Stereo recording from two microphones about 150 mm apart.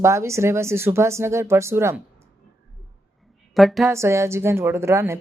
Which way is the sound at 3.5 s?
Centre (ahead or behind).